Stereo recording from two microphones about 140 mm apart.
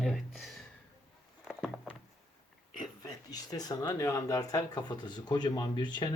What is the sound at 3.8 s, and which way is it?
Speech, 20° left (ahead or behind).